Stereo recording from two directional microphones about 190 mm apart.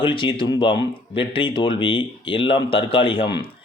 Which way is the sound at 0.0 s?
25° left (ahead or behind).